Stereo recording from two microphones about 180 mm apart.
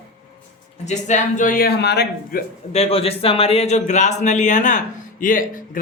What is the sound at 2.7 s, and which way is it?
A man's voice, 35° left (ahead or behind).